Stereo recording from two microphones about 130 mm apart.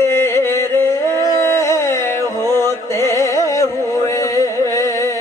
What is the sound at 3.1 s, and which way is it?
Music, 25° left (ahead or behind).